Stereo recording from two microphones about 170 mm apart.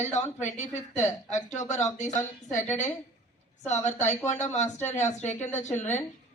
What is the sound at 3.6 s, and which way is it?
A woman's voice, 40° left (ahead or behind).